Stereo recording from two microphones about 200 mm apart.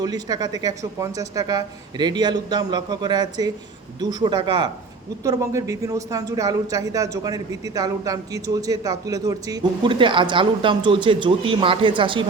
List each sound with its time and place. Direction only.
0.0 s a man's voice: 20° right (ahead or behind)